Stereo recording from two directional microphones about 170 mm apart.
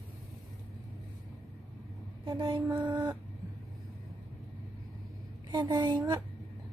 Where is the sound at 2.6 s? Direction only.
10° right (ahead or behind).